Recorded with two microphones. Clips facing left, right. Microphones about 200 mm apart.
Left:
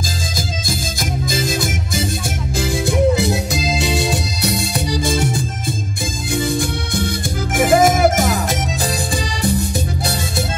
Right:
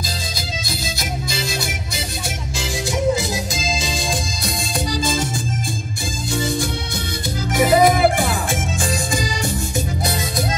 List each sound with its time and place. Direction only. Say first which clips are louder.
1.3 s music: left 5 dB; 50° left (ahead or behind)
7.5 s music: left 1 dB; 50° left (ahead or behind)